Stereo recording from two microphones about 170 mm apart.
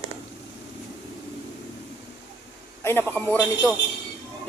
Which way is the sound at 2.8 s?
15° left (ahead or behind).